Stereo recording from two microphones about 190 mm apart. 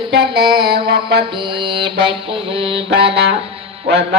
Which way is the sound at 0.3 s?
60° right (ahead or behind).